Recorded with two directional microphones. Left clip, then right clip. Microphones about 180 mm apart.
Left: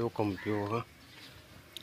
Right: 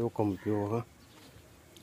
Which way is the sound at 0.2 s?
30° right (ahead or behind).